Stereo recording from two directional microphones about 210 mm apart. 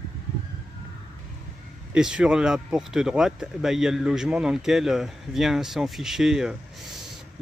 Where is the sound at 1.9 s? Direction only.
5° right (ahead or behind).